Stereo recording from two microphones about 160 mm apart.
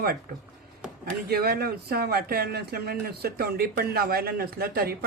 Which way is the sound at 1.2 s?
75° right (ahead or behind).